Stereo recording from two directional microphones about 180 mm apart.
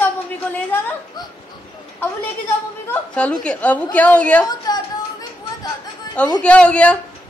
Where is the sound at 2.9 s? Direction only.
5° left (ahead or behind).